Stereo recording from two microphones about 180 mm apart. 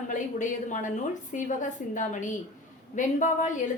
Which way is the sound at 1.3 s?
45° left (ahead or behind).